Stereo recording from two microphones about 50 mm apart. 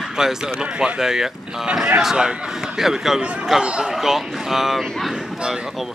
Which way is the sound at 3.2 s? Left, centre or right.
Right.